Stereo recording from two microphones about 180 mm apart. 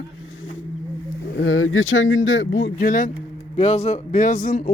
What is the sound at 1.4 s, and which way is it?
Speech, 90° left.